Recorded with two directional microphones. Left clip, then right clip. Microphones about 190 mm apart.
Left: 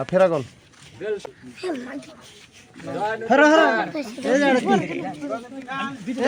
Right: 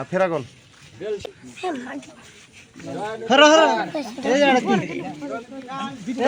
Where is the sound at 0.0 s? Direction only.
45° left (ahead or behind).